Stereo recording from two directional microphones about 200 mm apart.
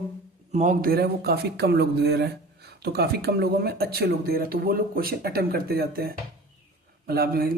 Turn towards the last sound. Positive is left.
turn(degrees=-50)  # may be behind; listen again after turning